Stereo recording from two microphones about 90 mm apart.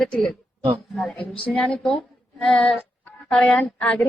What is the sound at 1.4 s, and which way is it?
A woman's voice, 10° left (ahead or behind).